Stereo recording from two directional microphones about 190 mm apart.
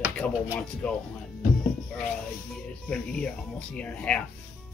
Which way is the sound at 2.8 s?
5° left (ahead or behind).